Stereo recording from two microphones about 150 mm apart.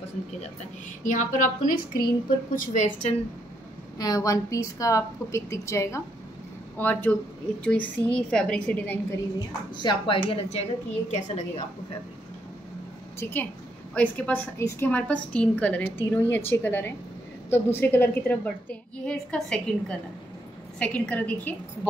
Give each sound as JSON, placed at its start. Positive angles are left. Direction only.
{"t": 1.0, "sound": "a woman's voice", "side_deg": 60}
{"t": 4.0, "sound": "a woman's voice", "side_deg": 25}
{"t": 9.8, "sound": "speech", "side_deg": 30}
{"t": 11.1, "sound": "a woman's voice", "side_deg": 50}
{"t": 13.2, "sound": "a woman's voice", "side_deg": 15}